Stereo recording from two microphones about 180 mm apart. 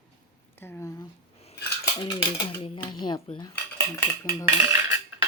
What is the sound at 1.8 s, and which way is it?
Cutlery, 25° left (ahead or behind).